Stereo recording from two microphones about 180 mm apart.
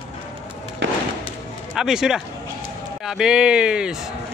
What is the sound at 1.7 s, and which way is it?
Speech, 5° right (ahead or behind).